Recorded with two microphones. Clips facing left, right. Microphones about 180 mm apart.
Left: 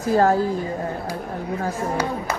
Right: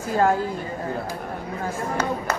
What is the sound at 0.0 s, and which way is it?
Speech, 40° left (ahead or behind).